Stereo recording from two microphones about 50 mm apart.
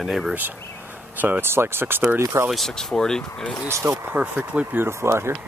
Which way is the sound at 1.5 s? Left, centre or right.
Right.